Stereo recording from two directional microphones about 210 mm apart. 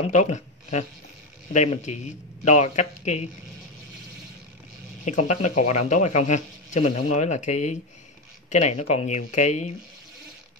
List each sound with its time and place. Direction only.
0.0 s speech: 35° left (ahead or behind)
5.0 s speech: 35° left (ahead or behind)